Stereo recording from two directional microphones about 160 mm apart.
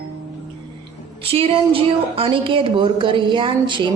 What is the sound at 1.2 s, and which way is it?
A woman's voice, 35° right (ahead or behind).